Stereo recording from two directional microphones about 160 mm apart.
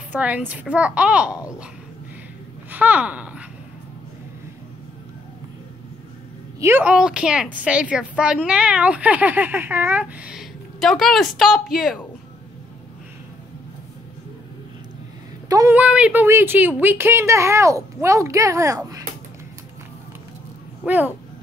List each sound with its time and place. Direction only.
0.1 s a woman's voice: 10° right (ahead or behind)
1.3 s speech: 20° left (ahead or behind)
2.7 s speech: 10° right (ahead or behind)
6.6 s a woman's voice: 10° right (ahead or behind)
15.4 s a sound: 20° right (ahead or behind)
15.8 s a woman's voice: 5° right (ahead or behind)
20.8 s a sound: 10° right (ahead or behind)